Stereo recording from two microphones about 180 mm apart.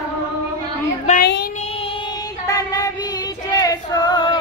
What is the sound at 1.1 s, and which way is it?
Child singing, 40° left (ahead or behind).